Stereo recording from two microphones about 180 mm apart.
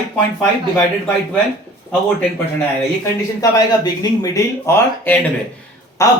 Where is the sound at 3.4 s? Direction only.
20° left (ahead or behind).